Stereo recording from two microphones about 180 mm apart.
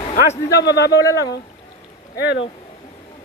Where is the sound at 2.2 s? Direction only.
70° left (ahead or behind).